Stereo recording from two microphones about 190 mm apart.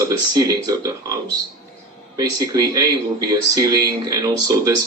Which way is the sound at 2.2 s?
20° right (ahead or behind).